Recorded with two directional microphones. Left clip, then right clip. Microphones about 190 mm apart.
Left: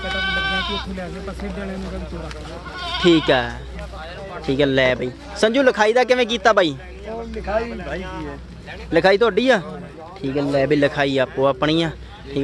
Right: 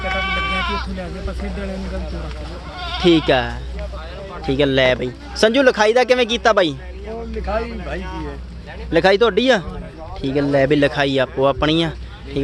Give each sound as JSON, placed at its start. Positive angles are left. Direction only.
{"t": 0.1, "sound": "goat", "side_deg": 60}
{"t": 3.0, "sound": "a man's voice", "side_deg": 0}
{"t": 8.9, "sound": "a man's voice", "side_deg": 0}
{"t": 10.2, "sound": "a man's voice", "side_deg": -10}